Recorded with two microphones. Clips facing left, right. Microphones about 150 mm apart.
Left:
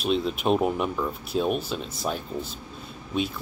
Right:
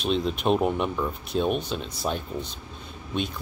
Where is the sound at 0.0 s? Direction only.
5° left (ahead or behind).